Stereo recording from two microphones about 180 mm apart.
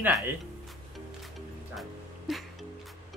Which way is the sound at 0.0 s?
10° right (ahead or behind).